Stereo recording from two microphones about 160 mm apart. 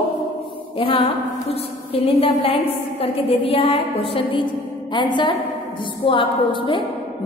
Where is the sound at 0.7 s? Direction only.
35° left (ahead or behind).